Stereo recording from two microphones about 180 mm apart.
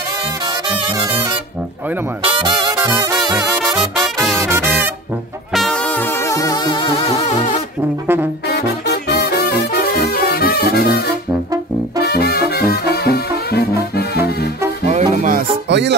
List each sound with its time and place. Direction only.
0.5 s music: 25° right (ahead or behind)
4.0 s music: centre (ahead or behind)
4.4 s music: 15° right (ahead or behind)
5.5 s music: 5° left (ahead or behind); by 7.1 s 25° left (ahead or behind)
8.1 s brass instrument: 10° right (ahead or behind)
8.5 s music: 65° left (ahead or behind)
14.9 s music: 40° right (ahead or behind)
15.7 s music: 70° right (ahead or behind)